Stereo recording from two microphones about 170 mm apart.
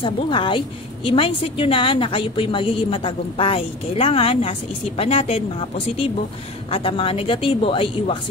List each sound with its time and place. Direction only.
0.0 s a woman's voice: 30° left (ahead or behind)